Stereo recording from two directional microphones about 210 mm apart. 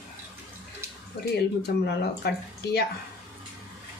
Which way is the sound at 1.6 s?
50° left (ahead or behind).